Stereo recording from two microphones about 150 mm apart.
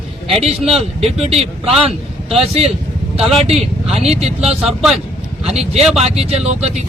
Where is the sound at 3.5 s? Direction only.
45° right (ahead or behind).